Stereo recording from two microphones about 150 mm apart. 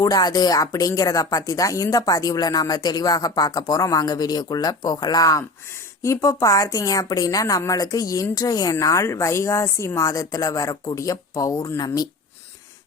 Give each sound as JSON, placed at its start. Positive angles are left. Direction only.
{"t": 0.0, "sound": "a woman's voice", "side_deg": 25}